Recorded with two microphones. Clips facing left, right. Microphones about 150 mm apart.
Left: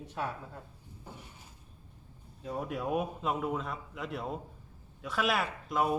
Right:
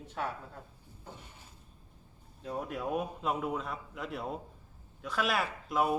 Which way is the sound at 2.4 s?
Centre (ahead or behind).